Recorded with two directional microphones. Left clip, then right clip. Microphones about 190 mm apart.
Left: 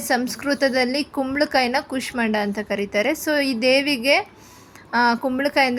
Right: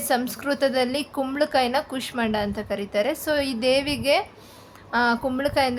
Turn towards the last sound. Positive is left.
turn(degrees=20)  # may be behind; listen again after turning